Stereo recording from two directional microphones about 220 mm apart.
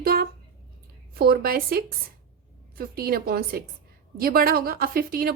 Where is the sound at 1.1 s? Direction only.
45° right (ahead or behind).